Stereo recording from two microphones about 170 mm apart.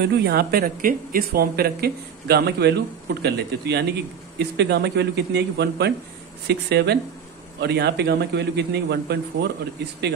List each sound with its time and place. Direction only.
0.0 s speech: 75° right (ahead or behind)